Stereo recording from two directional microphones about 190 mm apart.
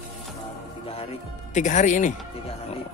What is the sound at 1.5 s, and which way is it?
Speech, 40° left (ahead or behind).